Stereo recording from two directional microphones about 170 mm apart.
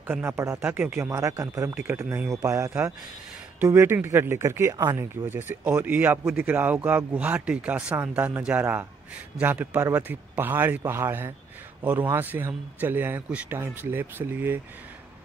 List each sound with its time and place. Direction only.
0.0 s a man's voice: 15° right (ahead or behind)